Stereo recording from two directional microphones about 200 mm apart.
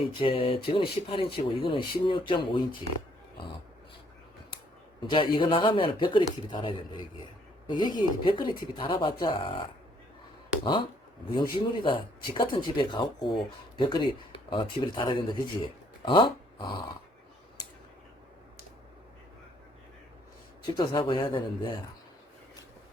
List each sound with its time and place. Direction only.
0.2 s speech: 25° left (ahead or behind)
5.0 s speech: 25° left (ahead or behind)
10.6 s speech: 25° left (ahead or behind)
20.7 s speech: 25° left (ahead or behind)